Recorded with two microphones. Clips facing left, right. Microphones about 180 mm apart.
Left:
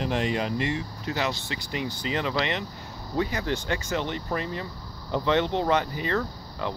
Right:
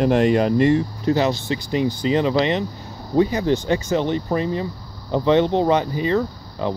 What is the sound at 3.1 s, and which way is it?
Speech, 20° right (ahead or behind).